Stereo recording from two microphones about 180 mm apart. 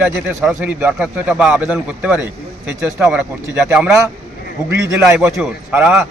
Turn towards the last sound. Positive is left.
turn(degrees=-10)  # may be behind; listen again after turning